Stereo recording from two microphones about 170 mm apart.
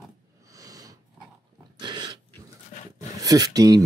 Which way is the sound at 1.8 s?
25° right (ahead or behind).